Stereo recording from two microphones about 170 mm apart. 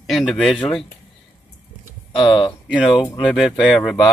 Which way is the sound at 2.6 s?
5° right (ahead or behind).